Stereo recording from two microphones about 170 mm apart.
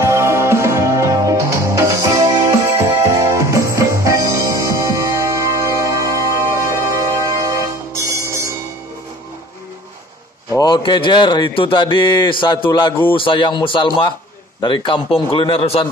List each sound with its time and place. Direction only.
0.0 s music: 15° right (ahead or behind)
10.5 s a man's voice: 25° left (ahead or behind)